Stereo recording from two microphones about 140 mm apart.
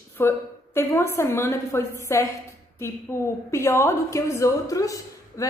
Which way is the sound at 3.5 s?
20° left (ahead or behind).